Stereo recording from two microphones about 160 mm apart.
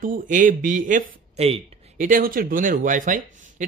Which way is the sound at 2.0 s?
55° right (ahead or behind).